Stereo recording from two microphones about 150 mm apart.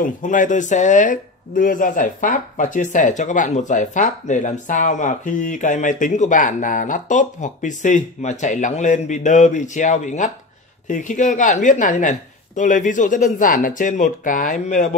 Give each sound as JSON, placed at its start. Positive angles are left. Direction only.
{"t": 0.0, "sound": "speech", "side_deg": 60}